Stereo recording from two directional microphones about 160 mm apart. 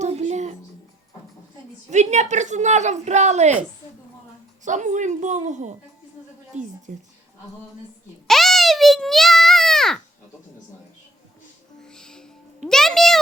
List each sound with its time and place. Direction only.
0.0 s music: 45° right (ahead or behind)
1.9 s a woman's voice: 45° right (ahead or behind)
4.6 s a woman's voice: 50° right (ahead or behind)
8.3 s a sound: centre (ahead or behind)
11.8 s music: 5° left (ahead or behind)
12.6 s a sound: 5° left (ahead or behind)